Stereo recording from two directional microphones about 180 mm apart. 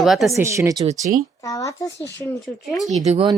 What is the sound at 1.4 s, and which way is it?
A child's voice, 20° left (ahead or behind).